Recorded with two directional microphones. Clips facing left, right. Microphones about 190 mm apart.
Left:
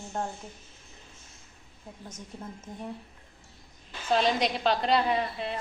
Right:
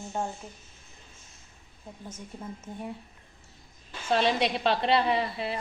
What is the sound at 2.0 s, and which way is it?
Speech, 10° right (ahead or behind).